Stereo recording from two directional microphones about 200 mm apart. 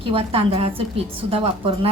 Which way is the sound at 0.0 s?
30° right (ahead or behind).